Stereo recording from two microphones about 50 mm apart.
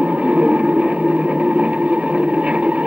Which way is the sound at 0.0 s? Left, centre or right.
Right.